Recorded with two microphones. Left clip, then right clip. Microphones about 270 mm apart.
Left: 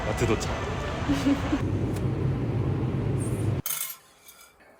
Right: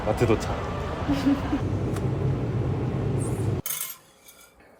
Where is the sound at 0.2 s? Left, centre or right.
Centre.